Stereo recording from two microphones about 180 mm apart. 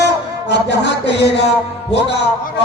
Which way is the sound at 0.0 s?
70° left (ahead or behind).